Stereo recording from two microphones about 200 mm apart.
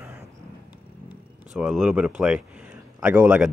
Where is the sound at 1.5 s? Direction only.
Centre (ahead or behind).